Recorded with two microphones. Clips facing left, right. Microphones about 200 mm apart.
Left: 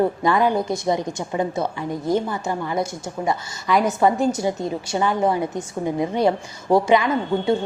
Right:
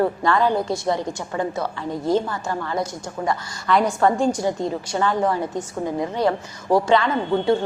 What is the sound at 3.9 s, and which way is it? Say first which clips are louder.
Speech: left 1 dB; 20° left (ahead or behind).